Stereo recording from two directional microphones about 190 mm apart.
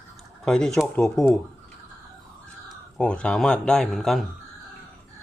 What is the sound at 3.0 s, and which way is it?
Speech, 5° left (ahead or behind).